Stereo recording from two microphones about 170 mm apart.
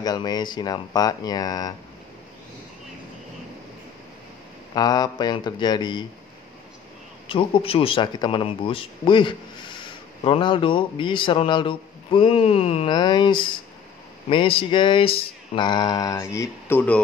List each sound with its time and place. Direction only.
0.0 s mantra: 25° left (ahead or behind)
4.7 s mantra: 25° left (ahead or behind)
7.2 s speech: 30° left (ahead or behind)
12.9 s mantra: 25° left (ahead or behind)